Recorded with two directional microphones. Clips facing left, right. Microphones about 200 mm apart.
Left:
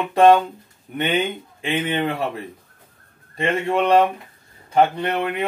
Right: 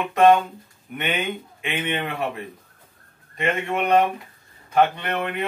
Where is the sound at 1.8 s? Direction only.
35° left (ahead or behind).